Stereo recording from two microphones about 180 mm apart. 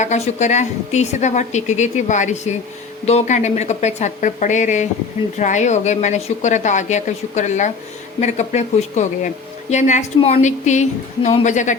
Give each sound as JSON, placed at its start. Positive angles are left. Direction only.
{"t": 0.0, "sound": "a woman's voice", "side_deg": 40}